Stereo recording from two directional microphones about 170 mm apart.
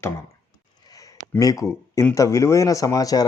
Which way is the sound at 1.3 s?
20° left (ahead or behind).